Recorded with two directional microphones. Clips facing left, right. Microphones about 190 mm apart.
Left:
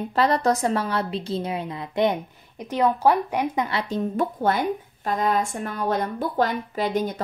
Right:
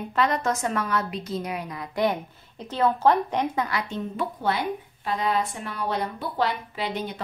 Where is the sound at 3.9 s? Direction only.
50° left (ahead or behind).